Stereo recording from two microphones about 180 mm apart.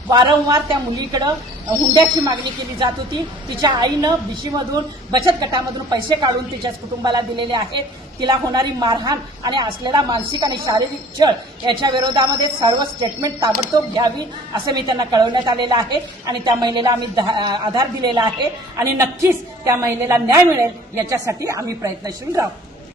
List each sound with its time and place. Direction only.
0.1 s a woman's voice: 25° right (ahead or behind)
18.8 s a woman's voice: 15° right (ahead or behind)